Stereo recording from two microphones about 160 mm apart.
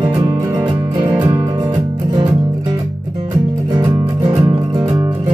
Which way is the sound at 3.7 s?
25° right (ahead or behind).